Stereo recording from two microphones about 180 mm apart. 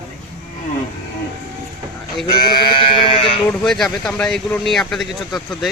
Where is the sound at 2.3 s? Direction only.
25° left (ahead or behind).